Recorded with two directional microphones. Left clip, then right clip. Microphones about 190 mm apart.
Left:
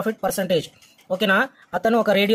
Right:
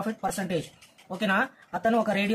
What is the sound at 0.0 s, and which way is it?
Speech, 45° left (ahead or behind).